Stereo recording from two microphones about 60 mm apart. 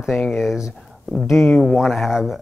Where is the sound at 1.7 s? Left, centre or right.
Centre.